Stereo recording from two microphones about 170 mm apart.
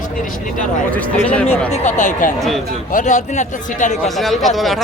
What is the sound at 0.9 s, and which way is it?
Speech, 10° left (ahead or behind).